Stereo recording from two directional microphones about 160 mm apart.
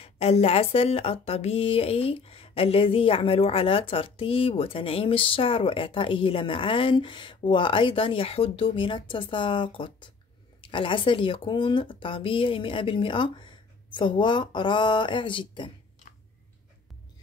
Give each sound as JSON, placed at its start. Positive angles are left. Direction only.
{"t": 0.0, "sound": "speech", "side_deg": 40}